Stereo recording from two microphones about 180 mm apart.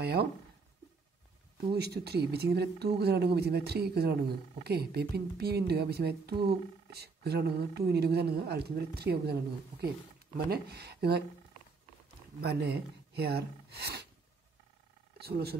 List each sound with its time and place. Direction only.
0.0 s speech: 65° right (ahead or behind)
1.7 s speech: 65° right (ahead or behind)
12.4 s speech: 65° right (ahead or behind)
15.1 s speech: 60° right (ahead or behind)